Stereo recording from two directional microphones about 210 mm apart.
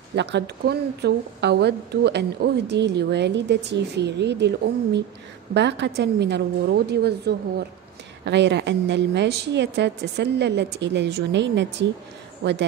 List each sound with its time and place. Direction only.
0.1 s a woman's voice: 55° right (ahead or behind)